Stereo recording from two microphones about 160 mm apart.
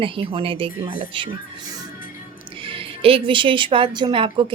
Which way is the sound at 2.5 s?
35° right (ahead or behind).